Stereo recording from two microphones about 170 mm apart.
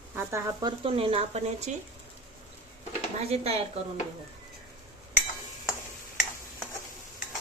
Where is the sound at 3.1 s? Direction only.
40° right (ahead or behind).